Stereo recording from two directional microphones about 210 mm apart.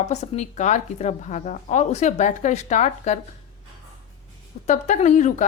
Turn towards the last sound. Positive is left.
turn(degrees=35)  # may be behind; listen again after turning